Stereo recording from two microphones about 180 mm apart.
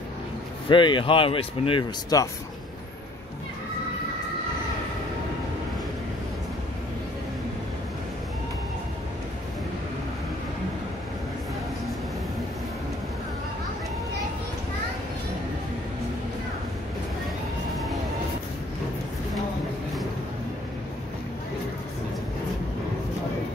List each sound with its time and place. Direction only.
0.7 s speech: 25° left (ahead or behind)